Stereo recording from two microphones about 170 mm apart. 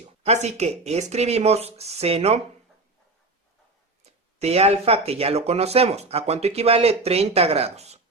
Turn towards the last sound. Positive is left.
turn(degrees=-40)  # may be behind; listen again after turning